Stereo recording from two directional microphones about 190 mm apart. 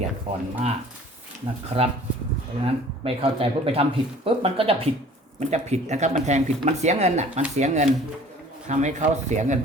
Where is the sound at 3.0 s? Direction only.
30° right (ahead or behind).